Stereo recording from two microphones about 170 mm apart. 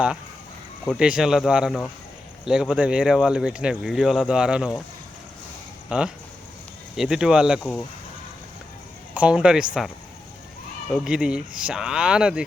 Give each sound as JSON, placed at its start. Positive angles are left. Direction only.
{"t": 0.9, "sound": "speech", "side_deg": -5}
{"t": 5.9, "sound": "speech", "side_deg": -5}
{"t": 9.1, "sound": "speech", "side_deg": -5}
{"t": 10.9, "sound": "speech", "side_deg": -5}